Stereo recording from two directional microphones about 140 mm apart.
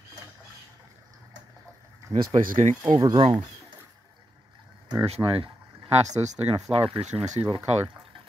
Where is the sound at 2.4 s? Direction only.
80° right.